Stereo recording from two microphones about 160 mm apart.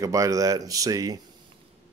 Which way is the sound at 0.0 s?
20° right (ahead or behind).